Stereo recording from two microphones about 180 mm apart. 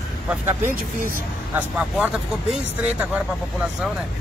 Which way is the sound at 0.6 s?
50° right (ahead or behind).